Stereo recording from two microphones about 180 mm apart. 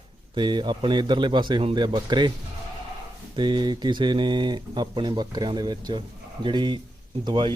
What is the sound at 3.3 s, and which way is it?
Speech, 25° right (ahead or behind).